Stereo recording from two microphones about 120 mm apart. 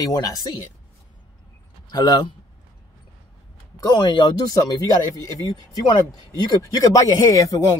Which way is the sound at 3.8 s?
40° left (ahead or behind).